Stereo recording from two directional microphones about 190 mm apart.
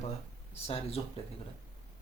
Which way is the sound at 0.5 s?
30° left (ahead or behind).